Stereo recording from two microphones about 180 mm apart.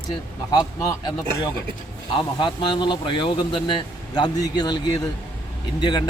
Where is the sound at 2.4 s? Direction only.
25° left (ahead or behind).